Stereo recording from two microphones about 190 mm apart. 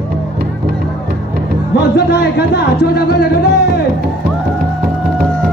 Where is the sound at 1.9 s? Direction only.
55° left (ahead or behind).